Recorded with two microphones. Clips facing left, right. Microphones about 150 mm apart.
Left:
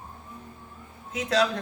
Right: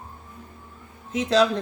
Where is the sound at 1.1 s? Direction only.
30° right (ahead or behind).